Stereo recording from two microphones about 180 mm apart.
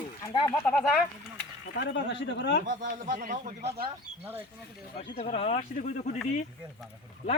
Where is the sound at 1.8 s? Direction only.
80° left.